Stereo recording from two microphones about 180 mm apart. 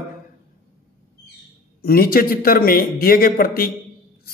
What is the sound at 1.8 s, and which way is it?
A man's voice, 55° left (ahead or behind).